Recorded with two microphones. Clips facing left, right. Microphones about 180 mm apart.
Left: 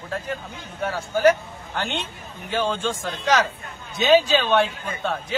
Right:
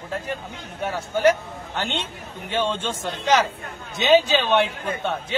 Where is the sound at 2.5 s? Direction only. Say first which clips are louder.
Left 1 dB; 25° right (ahead or behind).